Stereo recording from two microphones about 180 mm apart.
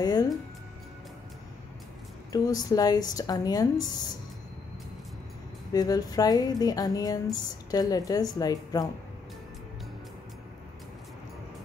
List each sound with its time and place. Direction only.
0.0 s speech: 20° left (ahead or behind)
2.3 s speech: 20° left (ahead or behind)
5.7 s speech: 20° left (ahead or behind)